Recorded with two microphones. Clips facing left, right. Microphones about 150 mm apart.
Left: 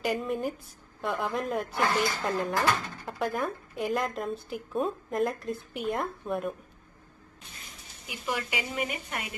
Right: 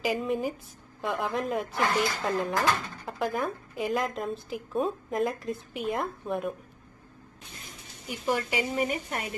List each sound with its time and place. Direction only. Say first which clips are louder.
0.0 s speech: right 1 dB; centre (ahead or behind)
8.1 s speech: right 4 dB; 40° right (ahead or behind)